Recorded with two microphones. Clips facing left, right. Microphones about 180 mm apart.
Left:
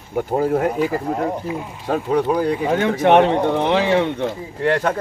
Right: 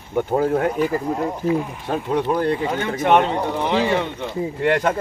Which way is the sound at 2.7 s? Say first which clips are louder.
Left 5 dB; 70° left (ahead or behind).